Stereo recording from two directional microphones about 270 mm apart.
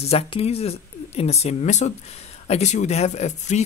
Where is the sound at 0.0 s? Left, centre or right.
Left.